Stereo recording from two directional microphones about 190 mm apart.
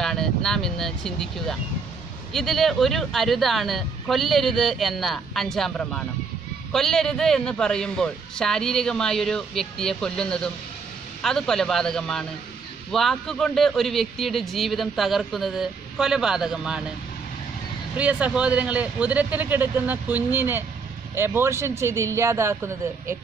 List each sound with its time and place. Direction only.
0.0 s vehicle: centre (ahead or behind)
2.3 s a man's voice: centre (ahead or behind)
17.9 s a man's voice: 5° right (ahead or behind)